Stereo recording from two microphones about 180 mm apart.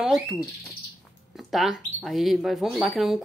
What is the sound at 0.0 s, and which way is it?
Speech, centre (ahead or behind).